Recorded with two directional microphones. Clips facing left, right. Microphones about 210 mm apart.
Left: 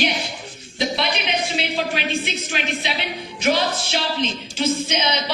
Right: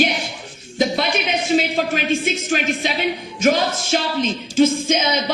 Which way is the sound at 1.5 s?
45° right (ahead or behind).